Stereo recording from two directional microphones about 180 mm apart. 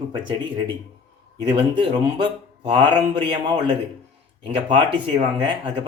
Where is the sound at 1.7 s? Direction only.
25° right (ahead or behind).